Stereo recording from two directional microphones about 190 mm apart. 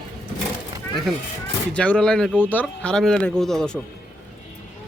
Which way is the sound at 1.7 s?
5° left (ahead or behind).